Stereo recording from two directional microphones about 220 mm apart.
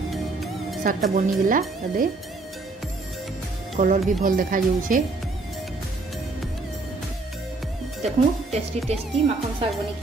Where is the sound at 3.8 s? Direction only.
35° right (ahead or behind).